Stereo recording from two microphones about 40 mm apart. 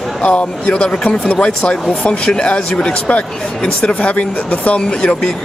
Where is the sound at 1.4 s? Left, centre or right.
Left.